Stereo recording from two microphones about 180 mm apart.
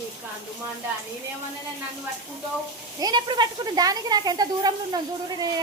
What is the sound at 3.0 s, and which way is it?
Speech, 25° right (ahead or behind).